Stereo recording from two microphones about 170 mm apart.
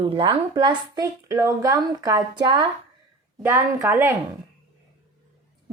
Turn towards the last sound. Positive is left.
turn(degrees=-15)  # may be behind; listen again after turning